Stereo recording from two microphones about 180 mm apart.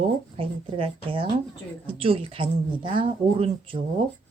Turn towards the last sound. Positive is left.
turn(degrees=-30)  # may be behind; listen again after turning